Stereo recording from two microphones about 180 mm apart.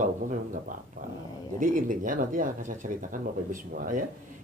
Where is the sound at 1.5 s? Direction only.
45° right (ahead or behind).